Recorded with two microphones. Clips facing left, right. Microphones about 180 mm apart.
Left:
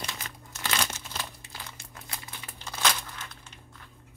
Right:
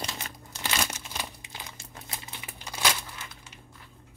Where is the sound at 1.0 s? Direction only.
15° right (ahead or behind).